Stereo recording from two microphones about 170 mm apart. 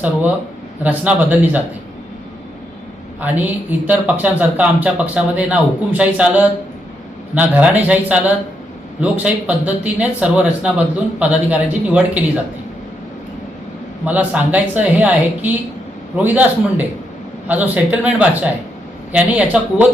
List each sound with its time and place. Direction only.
0.0 s speech: 10° right (ahead or behind)
3.2 s speech: 10° right (ahead or behind)
14.0 s speech: 10° right (ahead or behind)